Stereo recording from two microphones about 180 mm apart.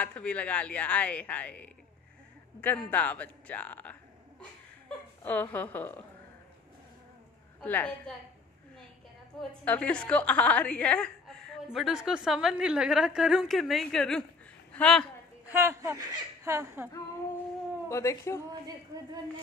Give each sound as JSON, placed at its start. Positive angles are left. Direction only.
{"t": 0.0, "sound": "speech", "side_deg": 5}
{"t": 7.6, "sound": "speech", "side_deg": 10}
{"t": 9.3, "sound": "a woman's voice", "side_deg": 0}
{"t": 15.5, "sound": "speech", "side_deg": -15}
{"t": 17.8, "sound": "speech", "side_deg": 15}